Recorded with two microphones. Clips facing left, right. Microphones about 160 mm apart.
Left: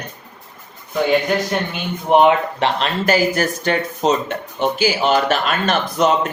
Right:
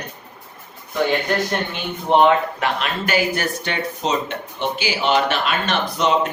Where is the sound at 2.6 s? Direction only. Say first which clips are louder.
Left 3 dB; 35° left (ahead or behind).